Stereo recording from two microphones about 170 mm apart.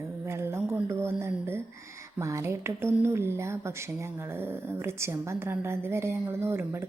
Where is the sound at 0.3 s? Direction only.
15° right (ahead or behind).